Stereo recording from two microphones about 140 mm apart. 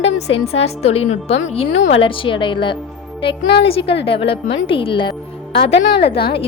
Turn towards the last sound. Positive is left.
turn(degrees=40)  # may be behind; listen again after turning